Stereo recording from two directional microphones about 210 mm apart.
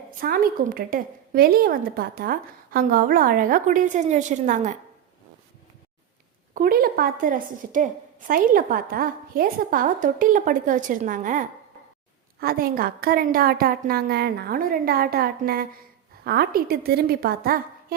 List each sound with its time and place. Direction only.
0.1 s a woman's voice: 45° right (ahead or behind)
6.5 s a woman's voice: 45° right (ahead or behind)